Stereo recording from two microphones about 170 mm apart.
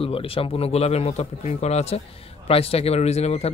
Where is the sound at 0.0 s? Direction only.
35° left (ahead or behind).